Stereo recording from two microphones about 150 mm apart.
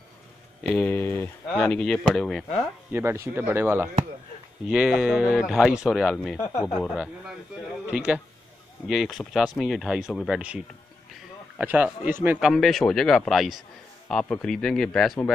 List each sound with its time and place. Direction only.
0.7 s speech: 10° left (ahead or behind)
2.9 s speech: 15° right (ahead or behind)
6.3 s speech: 20° left (ahead or behind)
6.8 s speech: centre (ahead or behind)
12.4 s speech: centre (ahead or behind)